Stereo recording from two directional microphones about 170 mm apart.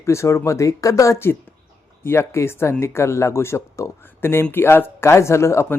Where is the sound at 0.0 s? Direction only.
15° left (ahead or behind).